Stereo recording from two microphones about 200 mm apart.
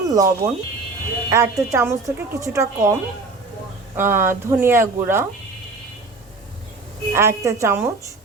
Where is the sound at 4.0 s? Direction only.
10° right (ahead or behind).